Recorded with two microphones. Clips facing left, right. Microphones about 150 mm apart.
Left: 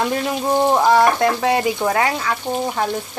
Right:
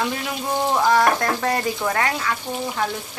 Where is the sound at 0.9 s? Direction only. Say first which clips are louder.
Left 4 dB; 25° left (ahead or behind).